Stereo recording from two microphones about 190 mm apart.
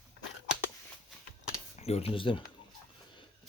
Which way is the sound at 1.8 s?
35° left (ahead or behind).